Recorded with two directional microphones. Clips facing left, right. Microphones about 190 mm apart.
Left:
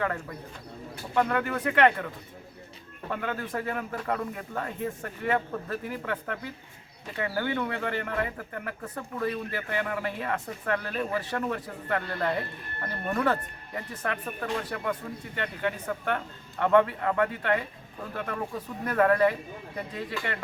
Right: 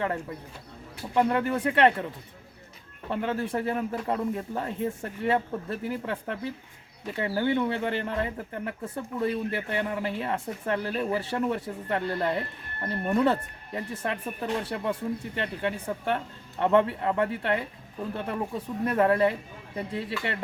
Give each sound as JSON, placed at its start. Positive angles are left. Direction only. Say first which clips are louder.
{"t": 0.0, "sound": "speech", "louder": "right 1 dB", "side_deg": -25}
{"t": 3.1, "sound": "speech", "louder": "right 4 dB", "side_deg": -25}